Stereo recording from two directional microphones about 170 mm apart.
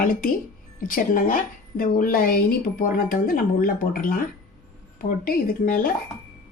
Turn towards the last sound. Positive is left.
turn(degrees=55)  # may be behind; listen again after turning